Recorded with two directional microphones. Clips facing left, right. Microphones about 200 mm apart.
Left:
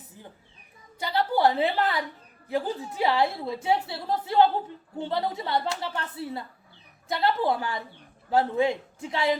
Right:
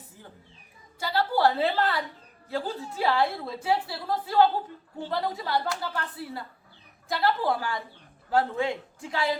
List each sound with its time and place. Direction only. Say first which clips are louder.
0.9 s a woman's voice: left 1 dB; 20° left (ahead or behind)